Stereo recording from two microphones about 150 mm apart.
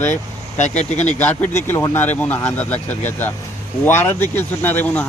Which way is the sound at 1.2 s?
10° left (ahead or behind).